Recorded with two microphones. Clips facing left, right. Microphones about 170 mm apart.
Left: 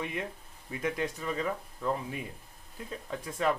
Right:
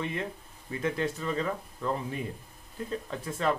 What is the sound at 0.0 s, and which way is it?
Speech, 10° left (ahead or behind).